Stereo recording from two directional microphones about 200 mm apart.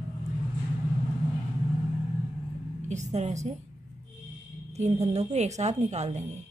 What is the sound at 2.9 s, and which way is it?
Speech, 35° right (ahead or behind).